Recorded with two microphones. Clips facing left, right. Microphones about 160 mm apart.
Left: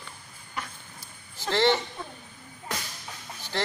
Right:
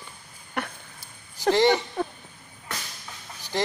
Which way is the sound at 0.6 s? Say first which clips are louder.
Right 6 dB; 65° right (ahead or behind).